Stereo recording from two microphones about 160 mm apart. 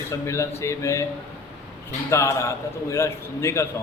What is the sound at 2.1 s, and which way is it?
A man's voice, 20° left (ahead or behind).